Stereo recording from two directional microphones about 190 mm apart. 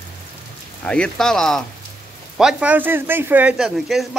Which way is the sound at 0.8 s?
5° left (ahead or behind).